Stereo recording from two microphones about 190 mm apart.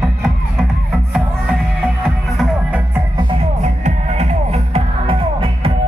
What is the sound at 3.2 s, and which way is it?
Music, 35° right (ahead or behind).